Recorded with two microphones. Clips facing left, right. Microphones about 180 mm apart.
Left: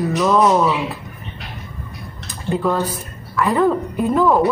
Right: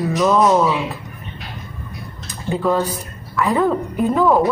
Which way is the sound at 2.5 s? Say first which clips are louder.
Right 1 dB; centre (ahead or behind).